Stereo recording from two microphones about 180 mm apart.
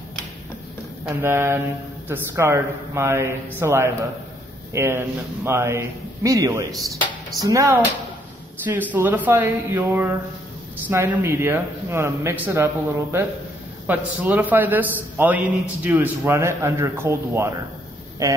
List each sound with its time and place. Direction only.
1.0 s speech: 15° right (ahead or behind)
8.9 s speech: 10° right (ahead or behind)